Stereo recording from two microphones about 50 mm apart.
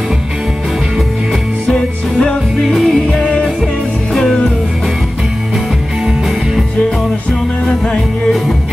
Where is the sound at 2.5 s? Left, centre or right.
Centre.